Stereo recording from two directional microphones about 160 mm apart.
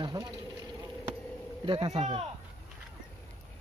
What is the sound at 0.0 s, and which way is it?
Vehicle, 25° right (ahead or behind).